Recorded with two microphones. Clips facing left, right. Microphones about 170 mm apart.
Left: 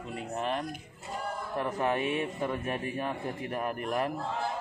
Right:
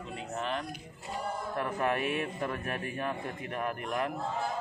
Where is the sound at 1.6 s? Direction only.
25° left (ahead or behind).